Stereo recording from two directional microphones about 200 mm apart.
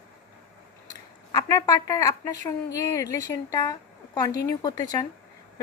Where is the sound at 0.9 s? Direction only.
20° left (ahead or behind).